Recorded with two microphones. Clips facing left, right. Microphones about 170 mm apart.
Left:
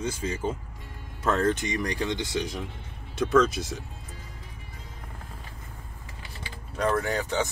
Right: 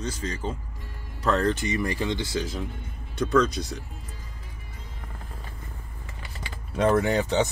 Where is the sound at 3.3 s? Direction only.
Centre (ahead or behind).